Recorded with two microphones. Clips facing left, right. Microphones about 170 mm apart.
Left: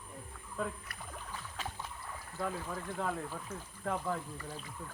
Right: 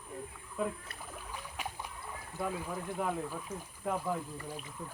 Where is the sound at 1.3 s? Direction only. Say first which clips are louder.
Right 2 dB; 15° right (ahead or behind).